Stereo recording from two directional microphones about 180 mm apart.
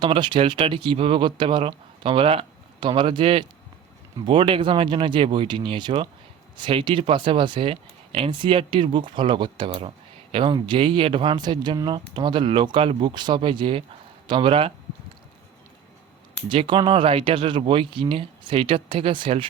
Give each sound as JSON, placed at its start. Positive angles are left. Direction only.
{"t": 0.0, "sound": "speech", "side_deg": -25}
{"t": 16.5, "sound": "speech", "side_deg": -25}